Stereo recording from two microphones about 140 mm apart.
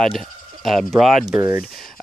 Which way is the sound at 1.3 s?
15° right (ahead or behind).